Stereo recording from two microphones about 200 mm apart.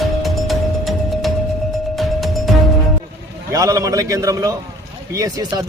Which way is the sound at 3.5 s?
15° right (ahead or behind).